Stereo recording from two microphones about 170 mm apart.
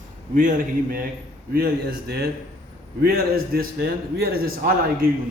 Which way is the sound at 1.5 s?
65° right (ahead or behind).